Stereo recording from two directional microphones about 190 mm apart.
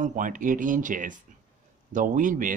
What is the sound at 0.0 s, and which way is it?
Speech, 45° right (ahead or behind).